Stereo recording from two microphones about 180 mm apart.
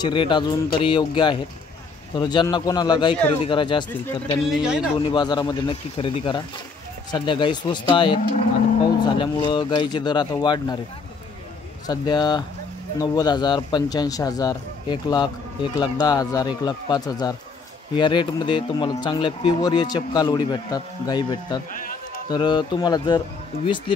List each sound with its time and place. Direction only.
0.0 s a man's voice: 25° left (ahead or behind)
4.5 s speech: 5° right (ahead or behind)
5.1 s a man's voice: 25° left (ahead or behind)
11.9 s a man's voice: 25° left (ahead or behind)
21.7 s a sound: 50° left (ahead or behind)
22.3 s a man's voice: 25° left (ahead or behind)